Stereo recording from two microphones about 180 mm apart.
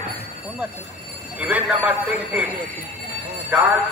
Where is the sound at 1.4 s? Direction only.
10° right (ahead or behind).